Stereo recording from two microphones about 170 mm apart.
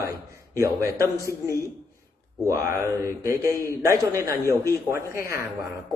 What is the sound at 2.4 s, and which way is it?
A man's voice, 15° right (ahead or behind).